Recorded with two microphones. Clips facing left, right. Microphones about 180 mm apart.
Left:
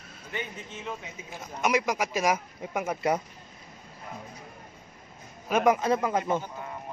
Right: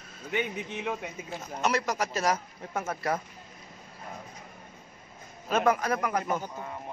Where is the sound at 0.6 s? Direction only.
65° right (ahead or behind).